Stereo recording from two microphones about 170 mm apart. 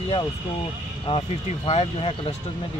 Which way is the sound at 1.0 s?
30° left (ahead or behind).